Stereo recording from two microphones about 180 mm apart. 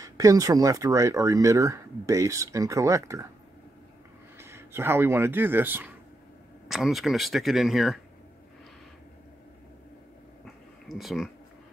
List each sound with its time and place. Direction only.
0.0 s speech: 20° right (ahead or behind)
4.4 s speech: 15° right (ahead or behind)
10.4 s a sound: centre (ahead or behind)